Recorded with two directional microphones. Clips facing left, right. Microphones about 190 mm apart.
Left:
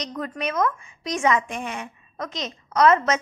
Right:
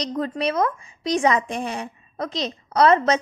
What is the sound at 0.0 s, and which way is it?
A woman's voice, 30° right (ahead or behind).